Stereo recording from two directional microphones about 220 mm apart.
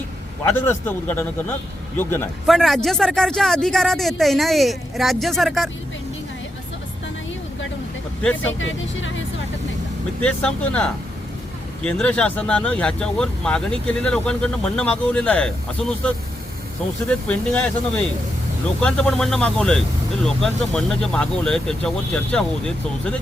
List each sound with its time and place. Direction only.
0.5 s speech: 10° left (ahead or behind)
8.4 s speech: 60° left (ahead or behind)
10.2 s speech: 5° left (ahead or behind)